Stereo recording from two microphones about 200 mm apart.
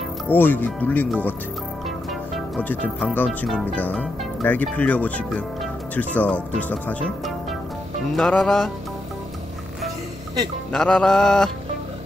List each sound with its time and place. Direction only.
0.3 s speech: 10° left (ahead or behind)
2.3 s speech: centre (ahead or behind)
8.2 s music: centre (ahead or behind)
10.7 s music: 5° left (ahead or behind)